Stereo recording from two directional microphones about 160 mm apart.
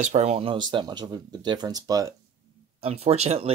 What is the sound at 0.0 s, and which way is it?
Speech, 45° right (ahead or behind).